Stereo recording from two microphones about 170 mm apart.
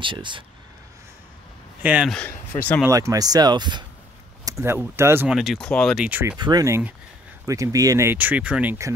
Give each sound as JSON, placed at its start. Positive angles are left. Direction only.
{"t": 0.0, "sound": "speech", "side_deg": -30}
{"t": 1.8, "sound": "speech", "side_deg": -10}
{"t": 2.0, "sound": "speech", "side_deg": 5}
{"t": 2.9, "sound": "speech", "side_deg": -20}
{"t": 4.5, "sound": "speech", "side_deg": -15}
{"t": 6.0, "sound": "speech", "side_deg": -10}
{"t": 6.3, "sound": "speech", "side_deg": -25}